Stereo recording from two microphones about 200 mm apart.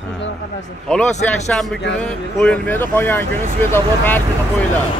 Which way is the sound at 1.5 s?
Centre (ahead or behind).